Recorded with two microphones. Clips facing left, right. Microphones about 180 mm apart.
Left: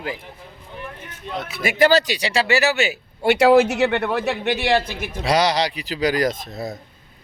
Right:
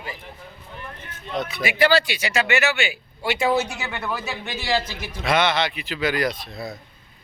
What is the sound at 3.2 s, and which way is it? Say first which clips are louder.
Speech: left 8 dB; 65° left (ahead or behind).